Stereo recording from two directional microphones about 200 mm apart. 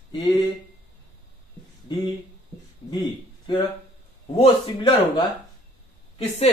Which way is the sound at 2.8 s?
25° left (ahead or behind).